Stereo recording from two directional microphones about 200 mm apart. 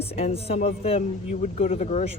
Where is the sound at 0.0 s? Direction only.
30° left (ahead or behind).